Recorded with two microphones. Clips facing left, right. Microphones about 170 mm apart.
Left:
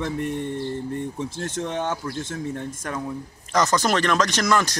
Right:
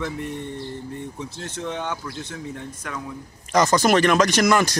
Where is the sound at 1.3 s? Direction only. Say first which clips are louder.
Left 5 dB; 50° left (ahead or behind).